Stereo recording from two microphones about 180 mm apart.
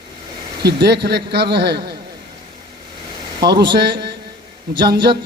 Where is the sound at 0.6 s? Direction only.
65° right (ahead or behind).